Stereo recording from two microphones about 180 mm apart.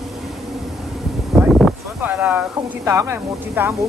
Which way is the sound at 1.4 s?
Centre (ahead or behind).